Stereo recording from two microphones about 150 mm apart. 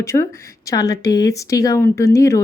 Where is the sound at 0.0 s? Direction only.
20° left (ahead or behind).